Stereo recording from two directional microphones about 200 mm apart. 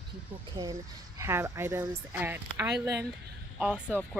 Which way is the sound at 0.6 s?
15° right (ahead or behind).